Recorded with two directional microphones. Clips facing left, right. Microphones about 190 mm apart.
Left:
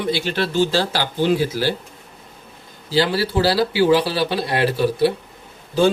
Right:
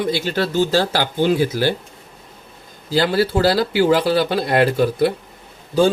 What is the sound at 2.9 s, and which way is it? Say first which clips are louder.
Speech: right 2 dB; 50° right (ahead or behind).